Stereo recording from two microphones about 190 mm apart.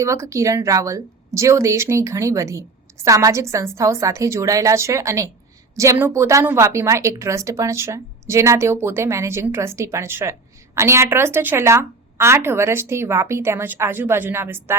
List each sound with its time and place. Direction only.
0.0 s a woman's voice: 15° right (ahead or behind)